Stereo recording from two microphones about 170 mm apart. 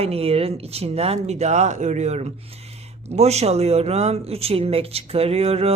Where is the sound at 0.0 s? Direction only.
35° right (ahead or behind).